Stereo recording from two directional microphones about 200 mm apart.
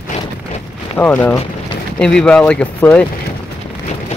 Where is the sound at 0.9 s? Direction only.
10° left (ahead or behind).